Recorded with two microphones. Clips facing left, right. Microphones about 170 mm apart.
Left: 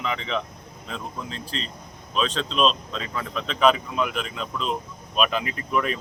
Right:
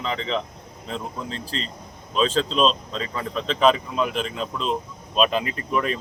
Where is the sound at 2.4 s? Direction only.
35° right (ahead or behind).